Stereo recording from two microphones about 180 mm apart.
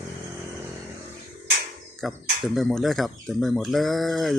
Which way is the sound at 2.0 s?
Centre (ahead or behind).